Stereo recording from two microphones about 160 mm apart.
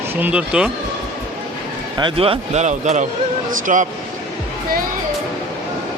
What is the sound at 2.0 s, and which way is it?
A man's voice, 35° right (ahead or behind).